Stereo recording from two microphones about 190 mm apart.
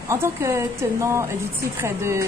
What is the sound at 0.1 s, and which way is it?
Speech, 15° right (ahead or behind).